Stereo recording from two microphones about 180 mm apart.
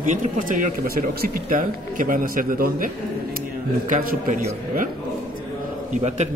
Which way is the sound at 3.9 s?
40° right (ahead or behind).